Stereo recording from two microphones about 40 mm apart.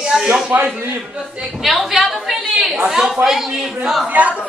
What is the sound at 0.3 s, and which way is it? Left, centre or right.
Speech, right.